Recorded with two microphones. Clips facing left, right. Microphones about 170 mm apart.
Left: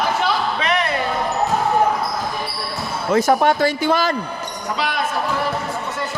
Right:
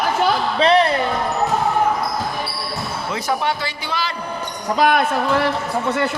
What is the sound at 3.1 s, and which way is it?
Speech, 50° left (ahead or behind).